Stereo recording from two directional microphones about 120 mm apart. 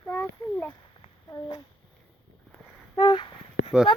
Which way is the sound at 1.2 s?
35° left (ahead or behind).